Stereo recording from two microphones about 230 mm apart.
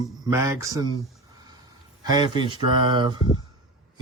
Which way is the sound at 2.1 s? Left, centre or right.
Centre.